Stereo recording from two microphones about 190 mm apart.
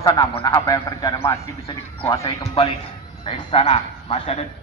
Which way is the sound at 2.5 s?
30° left (ahead or behind).